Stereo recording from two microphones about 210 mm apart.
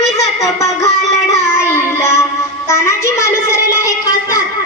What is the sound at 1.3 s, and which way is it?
Child singing, 15° left (ahead or behind).